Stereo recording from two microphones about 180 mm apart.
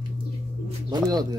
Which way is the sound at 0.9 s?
20° right (ahead or behind).